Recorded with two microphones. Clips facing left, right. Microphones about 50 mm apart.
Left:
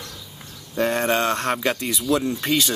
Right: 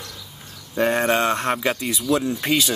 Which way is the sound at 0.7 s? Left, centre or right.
Centre.